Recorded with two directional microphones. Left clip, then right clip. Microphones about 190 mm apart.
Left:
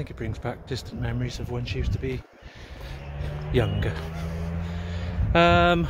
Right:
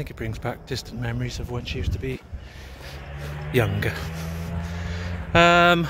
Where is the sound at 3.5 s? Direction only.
10° right (ahead or behind).